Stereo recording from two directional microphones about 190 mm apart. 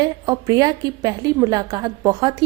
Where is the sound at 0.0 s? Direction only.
20° right (ahead or behind).